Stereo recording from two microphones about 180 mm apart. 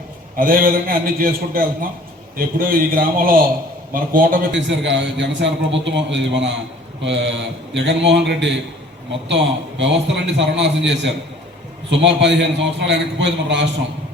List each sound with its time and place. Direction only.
0.3 s a man's voice: 50° right (ahead or behind)
4.5 s a man's voice: 90° right